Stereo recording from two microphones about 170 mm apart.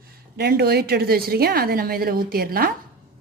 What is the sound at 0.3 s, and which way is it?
A woman's voice, 70° right (ahead or behind).